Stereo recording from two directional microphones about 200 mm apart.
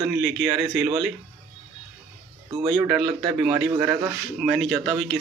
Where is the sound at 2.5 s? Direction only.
25° right (ahead or behind).